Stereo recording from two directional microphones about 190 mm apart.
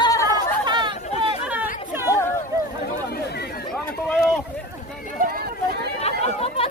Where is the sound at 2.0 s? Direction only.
15° left (ahead or behind).